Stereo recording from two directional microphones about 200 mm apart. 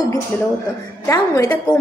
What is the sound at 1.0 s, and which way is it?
Speech, 15° left (ahead or behind).